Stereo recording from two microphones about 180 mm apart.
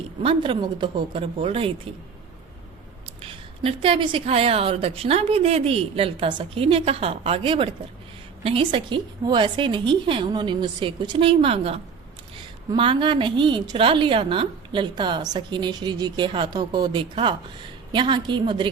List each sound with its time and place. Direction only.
0.2 s a woman's voice: 30° right (ahead or behind)
3.2 s a woman's voice: 35° right (ahead or behind)